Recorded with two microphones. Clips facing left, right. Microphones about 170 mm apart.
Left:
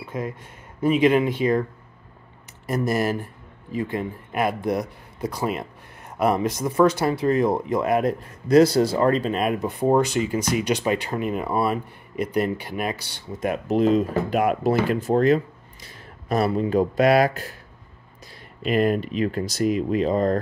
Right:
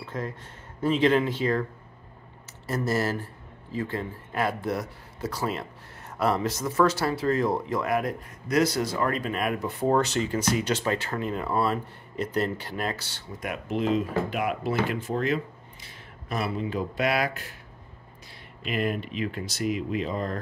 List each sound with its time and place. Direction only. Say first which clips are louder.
0.0 s a sound: left 4 dB; 10° left (ahead or behind)
0.8 s speech: left 4 dB; 15° left (ahead or behind)
2.6 s speech: left 4 dB; 15° left (ahead or behind)
13.4 s speech: left 8 dB; 35° left (ahead or behind)
18.7 s speech: left 8 dB; 40° left (ahead or behind)